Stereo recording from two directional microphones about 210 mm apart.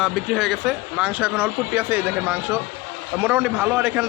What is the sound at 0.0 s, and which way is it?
Speech, centre (ahead or behind).